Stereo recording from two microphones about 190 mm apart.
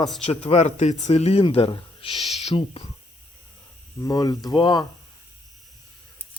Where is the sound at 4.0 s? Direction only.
20° left (ahead or behind).